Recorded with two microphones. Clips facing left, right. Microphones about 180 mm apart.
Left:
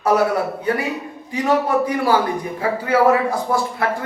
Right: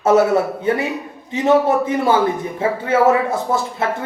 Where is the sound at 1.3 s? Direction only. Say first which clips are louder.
Right 4 dB; 25° right (ahead or behind).